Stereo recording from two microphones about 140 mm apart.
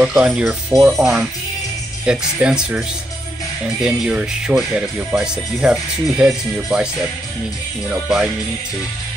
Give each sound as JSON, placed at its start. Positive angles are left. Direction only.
{"t": 0.0, "sound": "speech", "side_deg": -5}
{"t": 3.8, "sound": "speech", "side_deg": -5}
{"t": 7.9, "sound": "speech", "side_deg": -5}